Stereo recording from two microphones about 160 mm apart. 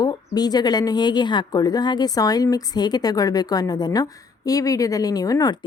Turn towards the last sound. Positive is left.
turn(degrees=20)  # may be behind; listen again after turning